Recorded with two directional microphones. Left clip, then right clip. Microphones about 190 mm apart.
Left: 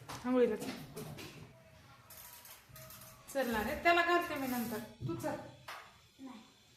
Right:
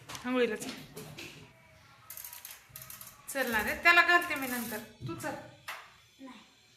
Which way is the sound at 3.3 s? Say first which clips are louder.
Right 4 dB; 5° right (ahead or behind).